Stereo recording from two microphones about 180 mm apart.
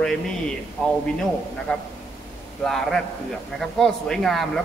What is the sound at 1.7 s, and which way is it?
Speech, 5° left (ahead or behind).